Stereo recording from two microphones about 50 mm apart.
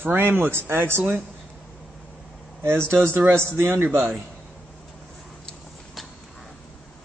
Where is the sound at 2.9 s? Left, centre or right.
Right.